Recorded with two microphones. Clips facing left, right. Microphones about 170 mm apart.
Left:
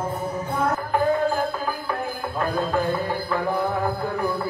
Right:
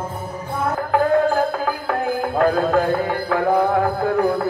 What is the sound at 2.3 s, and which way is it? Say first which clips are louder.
Music: right 6 dB; 75° right (ahead or behind).